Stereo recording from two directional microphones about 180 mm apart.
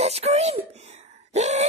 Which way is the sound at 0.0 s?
35° right (ahead or behind).